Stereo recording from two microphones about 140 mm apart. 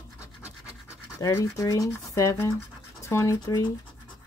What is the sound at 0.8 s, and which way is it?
Speech, 25° left (ahead or behind).